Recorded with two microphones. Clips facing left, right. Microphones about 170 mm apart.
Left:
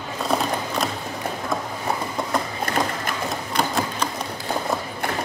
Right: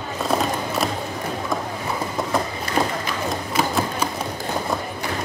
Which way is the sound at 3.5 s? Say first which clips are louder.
Right 1 dB; 5° right (ahead or behind).